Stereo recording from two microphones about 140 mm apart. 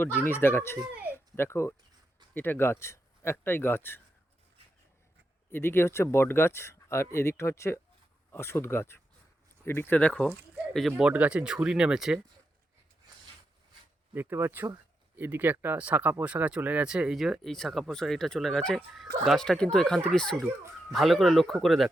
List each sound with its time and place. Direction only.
0.0 s speech: 15° left (ahead or behind)
1.1 s a sound: 15° left (ahead or behind)
2.3 s speech: 15° left (ahead or behind)
5.5 s speech: 15° left (ahead or behind)
10.9 s speech: 10° right (ahead or behind)
14.1 s speech: 15° right (ahead or behind); by 21.8 s centre (ahead or behind)